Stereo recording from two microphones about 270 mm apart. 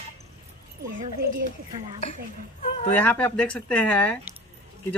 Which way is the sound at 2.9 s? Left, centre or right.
Centre.